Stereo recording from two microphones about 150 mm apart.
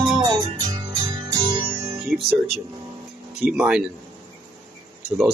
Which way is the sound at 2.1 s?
Centre (ahead or behind).